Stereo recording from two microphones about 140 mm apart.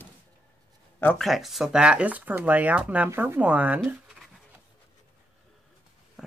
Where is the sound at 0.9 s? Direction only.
10° left (ahead or behind).